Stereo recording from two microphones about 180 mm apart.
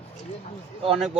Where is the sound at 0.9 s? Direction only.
5° right (ahead or behind).